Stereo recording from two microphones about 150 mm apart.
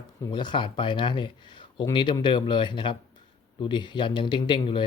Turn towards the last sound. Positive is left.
turn(degrees=35)  # may be behind; listen again after turning